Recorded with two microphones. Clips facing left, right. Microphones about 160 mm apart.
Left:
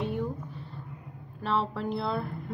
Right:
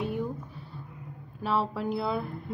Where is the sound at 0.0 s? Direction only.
5° right (ahead or behind).